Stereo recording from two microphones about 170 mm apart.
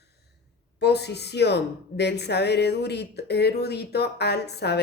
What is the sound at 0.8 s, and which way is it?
Speech, 80° left.